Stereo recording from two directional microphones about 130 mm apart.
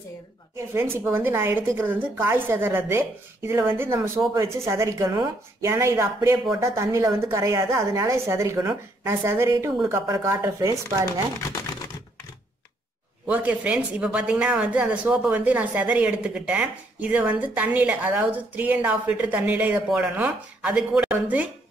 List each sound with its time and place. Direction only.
0.7 s a woman's voice: 15° right (ahead or behind)
13.3 s speech: 10° right (ahead or behind)